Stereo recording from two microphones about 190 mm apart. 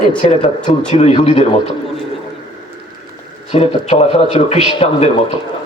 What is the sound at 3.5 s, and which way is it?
A man's voice, 35° left (ahead or behind).